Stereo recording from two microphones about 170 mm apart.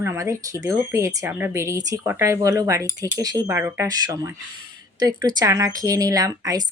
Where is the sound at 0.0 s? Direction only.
15° right (ahead or behind).